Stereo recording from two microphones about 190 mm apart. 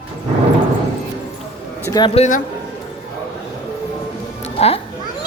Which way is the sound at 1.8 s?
20° left (ahead or behind).